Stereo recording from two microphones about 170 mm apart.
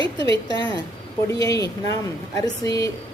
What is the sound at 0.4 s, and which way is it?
A woman's voice, 25° left (ahead or behind).